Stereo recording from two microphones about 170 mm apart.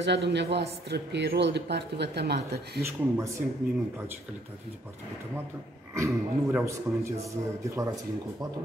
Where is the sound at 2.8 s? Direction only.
15° right (ahead or behind).